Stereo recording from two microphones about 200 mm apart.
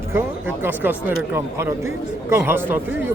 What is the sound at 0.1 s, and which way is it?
Speech, 10° right (ahead or behind).